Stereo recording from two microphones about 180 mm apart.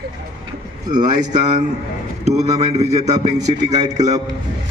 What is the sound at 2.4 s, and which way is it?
A man's voice, 35° right (ahead or behind).